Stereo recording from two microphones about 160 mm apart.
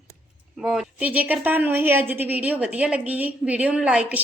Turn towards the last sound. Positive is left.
turn(degrees=-10)  # may be behind; listen again after turning